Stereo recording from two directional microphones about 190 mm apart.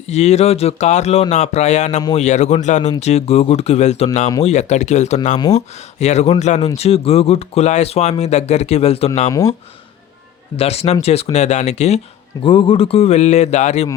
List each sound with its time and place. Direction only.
0.1 s speech: 35° left (ahead or behind)
10.6 s speech: 30° left (ahead or behind)